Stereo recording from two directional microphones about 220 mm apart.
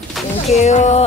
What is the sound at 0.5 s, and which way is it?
Speech, 30° left (ahead or behind).